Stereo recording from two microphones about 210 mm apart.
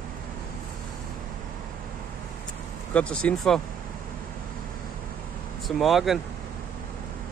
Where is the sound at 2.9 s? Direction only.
5° left (ahead or behind).